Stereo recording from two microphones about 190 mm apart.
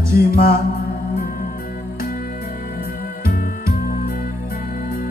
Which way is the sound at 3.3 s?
50° left (ahead or behind).